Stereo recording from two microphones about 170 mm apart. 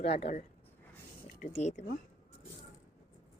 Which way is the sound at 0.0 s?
35° left (ahead or behind).